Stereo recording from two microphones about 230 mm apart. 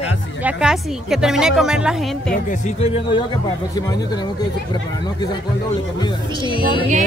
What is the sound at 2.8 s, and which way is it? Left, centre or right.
Speech, left.